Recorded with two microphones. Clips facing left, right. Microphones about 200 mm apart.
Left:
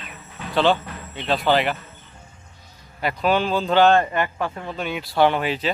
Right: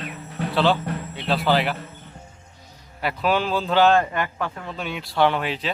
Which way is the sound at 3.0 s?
5° right (ahead or behind).